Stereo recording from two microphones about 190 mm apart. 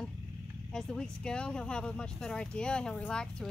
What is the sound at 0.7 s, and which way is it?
Speech, 5° left (ahead or behind).